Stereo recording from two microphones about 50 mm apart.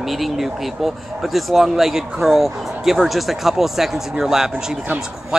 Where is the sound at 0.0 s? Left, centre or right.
Centre.